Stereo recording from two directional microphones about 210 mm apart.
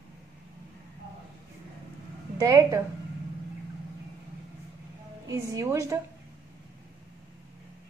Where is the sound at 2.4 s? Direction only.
15° right (ahead or behind).